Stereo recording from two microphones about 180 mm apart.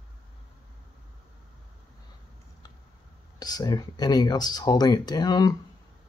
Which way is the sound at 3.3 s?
20° left (ahead or behind).